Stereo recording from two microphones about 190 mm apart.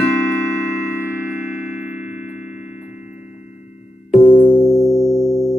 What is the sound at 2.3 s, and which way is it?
Music, 40° left (ahead or behind).